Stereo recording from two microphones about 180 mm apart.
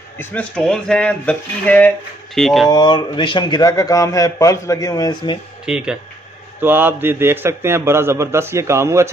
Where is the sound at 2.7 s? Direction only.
25° left (ahead or behind).